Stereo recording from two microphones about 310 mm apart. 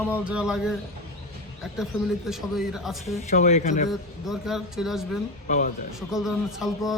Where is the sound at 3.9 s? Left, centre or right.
Centre.